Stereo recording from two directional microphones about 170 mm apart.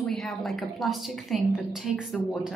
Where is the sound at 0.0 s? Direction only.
Centre (ahead or behind).